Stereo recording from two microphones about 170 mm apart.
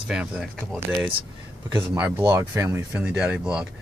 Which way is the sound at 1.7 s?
15° right (ahead or behind).